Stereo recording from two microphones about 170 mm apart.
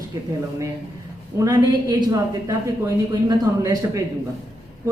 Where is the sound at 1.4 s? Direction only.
25° right (ahead or behind).